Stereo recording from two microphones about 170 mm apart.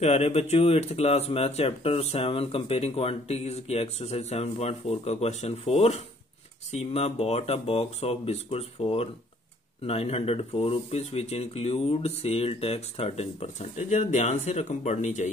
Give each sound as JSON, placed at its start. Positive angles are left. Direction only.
{"t": 0.0, "sound": "speech", "side_deg": 40}